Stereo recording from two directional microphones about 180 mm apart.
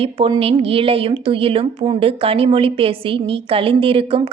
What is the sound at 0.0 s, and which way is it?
A woman's voice, 30° right (ahead or behind).